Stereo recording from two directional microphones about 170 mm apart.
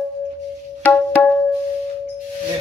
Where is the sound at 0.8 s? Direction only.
10° left (ahead or behind).